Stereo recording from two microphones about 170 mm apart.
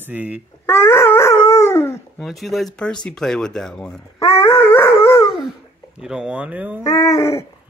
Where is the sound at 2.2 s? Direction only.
Centre (ahead or behind).